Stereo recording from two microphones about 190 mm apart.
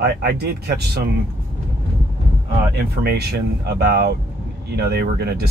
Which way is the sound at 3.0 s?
55° right (ahead or behind).